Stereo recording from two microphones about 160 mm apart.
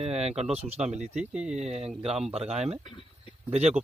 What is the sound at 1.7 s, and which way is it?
Speech, 40° right (ahead or behind).